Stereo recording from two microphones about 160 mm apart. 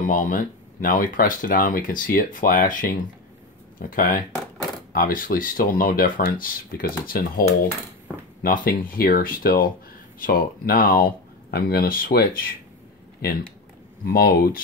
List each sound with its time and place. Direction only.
0.0 s speech: 55° left (ahead or behind)
8.6 s speech: 65° left (ahead or behind)